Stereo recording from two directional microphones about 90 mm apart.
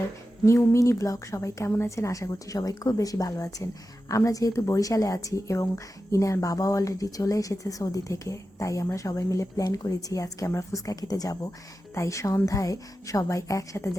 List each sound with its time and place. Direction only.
0.4 s speech: 30° left (ahead or behind)